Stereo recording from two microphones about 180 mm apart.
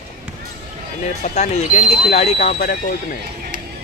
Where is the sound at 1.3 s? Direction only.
40° left (ahead or behind).